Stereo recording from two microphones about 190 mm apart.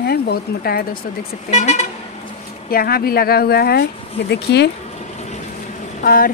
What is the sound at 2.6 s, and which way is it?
A woman's voice, 50° left (ahead or behind).